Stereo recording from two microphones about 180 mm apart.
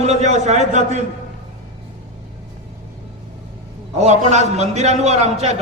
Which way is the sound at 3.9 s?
40° right (ahead or behind).